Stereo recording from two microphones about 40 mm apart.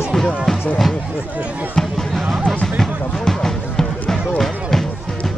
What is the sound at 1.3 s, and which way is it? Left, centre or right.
Speech, right.